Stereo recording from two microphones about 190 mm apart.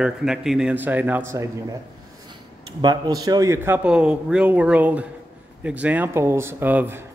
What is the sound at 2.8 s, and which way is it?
A man's voice, 20° right (ahead or behind).